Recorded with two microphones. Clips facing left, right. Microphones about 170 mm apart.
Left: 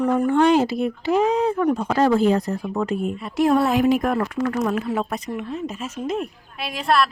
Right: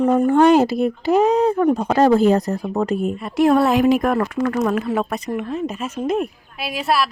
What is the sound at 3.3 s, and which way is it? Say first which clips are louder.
Speech: right 3 dB; 65° right (ahead or behind).